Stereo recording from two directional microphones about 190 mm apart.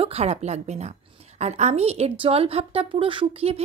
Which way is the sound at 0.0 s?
35° right (ahead or behind).